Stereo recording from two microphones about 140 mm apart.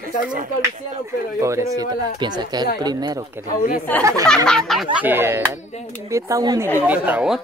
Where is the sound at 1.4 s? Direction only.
20° right (ahead or behind).